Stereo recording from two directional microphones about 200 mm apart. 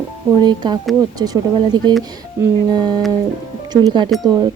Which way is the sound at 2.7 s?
20° right (ahead or behind).